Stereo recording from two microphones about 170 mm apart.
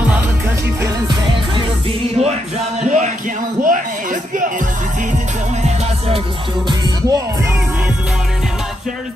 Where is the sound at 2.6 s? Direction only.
45° right (ahead or behind).